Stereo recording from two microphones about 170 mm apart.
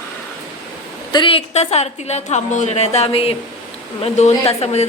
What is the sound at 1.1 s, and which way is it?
A woman's voice, 30° left (ahead or behind).